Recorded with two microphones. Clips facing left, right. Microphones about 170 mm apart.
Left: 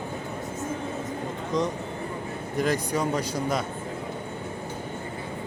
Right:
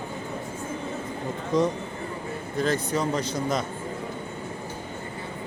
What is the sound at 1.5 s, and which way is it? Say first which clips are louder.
Speech: right 4 dB; centre (ahead or behind).